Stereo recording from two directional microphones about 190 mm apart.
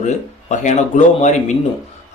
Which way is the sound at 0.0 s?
40° left (ahead or behind).